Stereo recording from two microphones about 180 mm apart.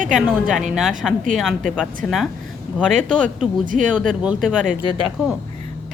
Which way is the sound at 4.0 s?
Centre (ahead or behind).